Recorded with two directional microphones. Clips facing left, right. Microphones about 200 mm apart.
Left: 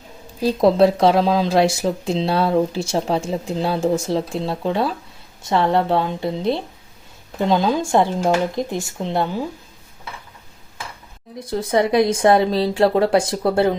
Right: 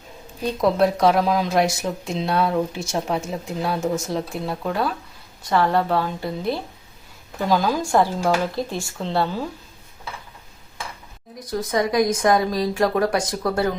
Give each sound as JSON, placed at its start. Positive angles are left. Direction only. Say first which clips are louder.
{"t": 0.4, "sound": "speech", "louder": "left 5 dB", "side_deg": 30}
{"t": 11.3, "sound": "speech", "louder": "left 4 dB", "side_deg": 30}